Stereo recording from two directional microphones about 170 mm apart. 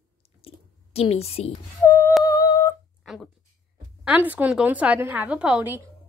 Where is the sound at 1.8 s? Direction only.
15° left (ahead or behind).